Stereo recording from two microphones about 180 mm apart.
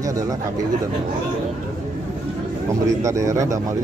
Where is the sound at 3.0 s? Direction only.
15° right (ahead or behind).